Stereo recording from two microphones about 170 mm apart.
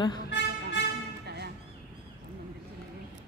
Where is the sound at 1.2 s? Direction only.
75° right (ahead or behind).